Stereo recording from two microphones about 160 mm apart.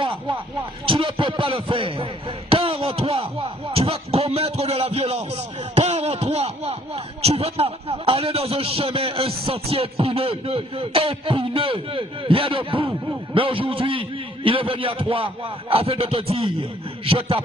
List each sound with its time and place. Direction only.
0.8 s a man's voice: 35° right (ahead or behind)
2.5 s a sound: 35° right (ahead or behind)
9.5 s a man's voice: 40° right (ahead or behind)